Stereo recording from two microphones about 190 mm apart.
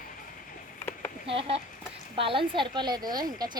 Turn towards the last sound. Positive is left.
turn(degrees=-20)  # may be behind; listen again after turning